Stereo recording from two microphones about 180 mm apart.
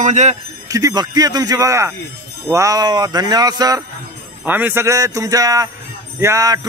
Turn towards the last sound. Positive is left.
turn(degrees=-20)  # may be behind; listen again after turning